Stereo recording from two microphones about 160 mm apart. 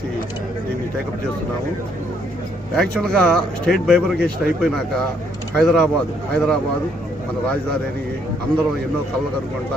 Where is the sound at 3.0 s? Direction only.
5° left (ahead or behind).